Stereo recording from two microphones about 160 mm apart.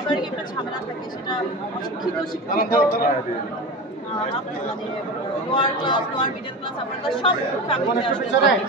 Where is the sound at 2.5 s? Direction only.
70° left (ahead or behind).